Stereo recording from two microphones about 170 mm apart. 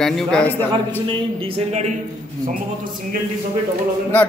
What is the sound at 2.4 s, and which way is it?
Speech, 55° right (ahead or behind).